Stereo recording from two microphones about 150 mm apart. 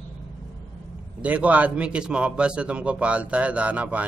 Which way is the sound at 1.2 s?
10° right (ahead or behind).